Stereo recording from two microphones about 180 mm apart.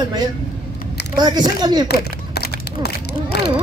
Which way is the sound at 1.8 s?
60° left (ahead or behind).